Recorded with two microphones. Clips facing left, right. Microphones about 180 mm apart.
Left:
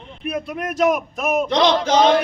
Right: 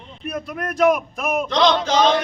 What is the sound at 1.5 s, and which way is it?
Chant, 15° left (ahead or behind).